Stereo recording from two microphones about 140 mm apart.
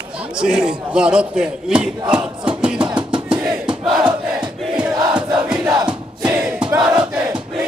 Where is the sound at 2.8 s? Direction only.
35° right (ahead or behind).